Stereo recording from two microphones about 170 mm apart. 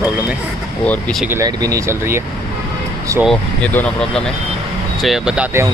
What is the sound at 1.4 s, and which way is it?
Speech, 20° right (ahead or behind).